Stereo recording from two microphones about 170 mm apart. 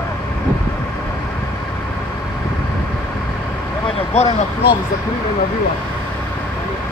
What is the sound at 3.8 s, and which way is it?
Vehicle, 40° left (ahead or behind).